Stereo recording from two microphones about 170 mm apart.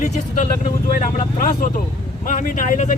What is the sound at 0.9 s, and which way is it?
Speech, 55° left (ahead or behind).